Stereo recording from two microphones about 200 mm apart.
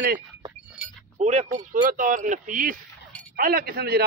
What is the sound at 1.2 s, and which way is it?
A man's voice, 35° right (ahead or behind).